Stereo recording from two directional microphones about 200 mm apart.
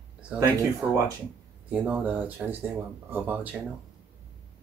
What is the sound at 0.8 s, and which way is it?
Speech, 10° right (ahead or behind).